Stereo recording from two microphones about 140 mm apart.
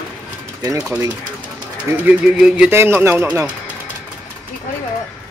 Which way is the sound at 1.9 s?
10° right (ahead or behind).